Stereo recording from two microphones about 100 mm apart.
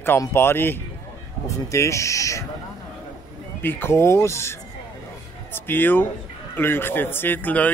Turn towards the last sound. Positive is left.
turn(degrees=15)  # may be behind; listen again after turning